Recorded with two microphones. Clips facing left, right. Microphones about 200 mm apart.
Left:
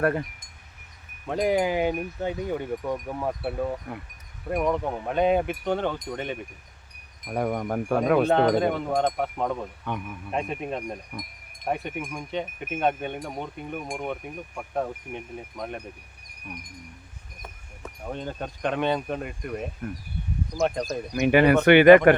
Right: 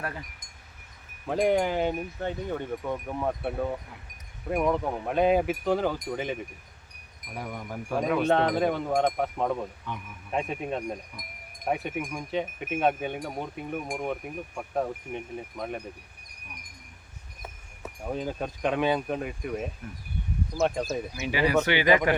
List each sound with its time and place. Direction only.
0.0 s wind chime: 60° left (ahead or behind)
1.3 s speech: centre (ahead or behind)
3.2 s wind chime: centre (ahead or behind)
7.3 s wind chime: 60° left (ahead or behind)
8.5 s wind chime: centre (ahead or behind)
9.9 s wind chime: 60° left (ahead or behind)
10.3 s wind chime: centre (ahead or behind)
17.4 s speech: 5° right (ahead or behind)
20.6 s wind chime: 5° right (ahead or behind)
21.2 s wind chime: 60° left (ahead or behind)